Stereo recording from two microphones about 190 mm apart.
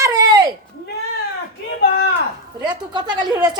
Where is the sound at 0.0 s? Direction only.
15° right (ahead or behind).